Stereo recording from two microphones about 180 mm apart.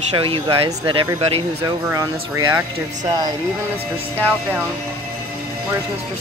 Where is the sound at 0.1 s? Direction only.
30° right (ahead or behind).